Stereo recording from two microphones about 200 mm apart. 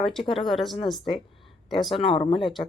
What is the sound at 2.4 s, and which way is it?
Speech, centre (ahead or behind).